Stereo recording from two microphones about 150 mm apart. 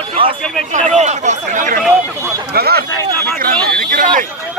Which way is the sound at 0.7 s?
50° right (ahead or behind).